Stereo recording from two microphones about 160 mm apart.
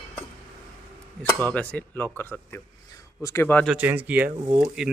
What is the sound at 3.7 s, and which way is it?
A man's voice, 10° right (ahead or behind).